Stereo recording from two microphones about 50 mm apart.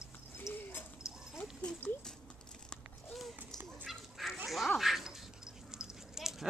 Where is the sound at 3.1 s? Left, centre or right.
Centre.